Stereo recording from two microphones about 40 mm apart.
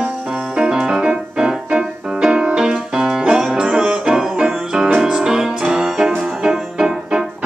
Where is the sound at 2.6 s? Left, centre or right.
Centre.